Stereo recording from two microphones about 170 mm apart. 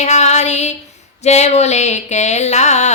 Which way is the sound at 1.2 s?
40° left (ahead or behind).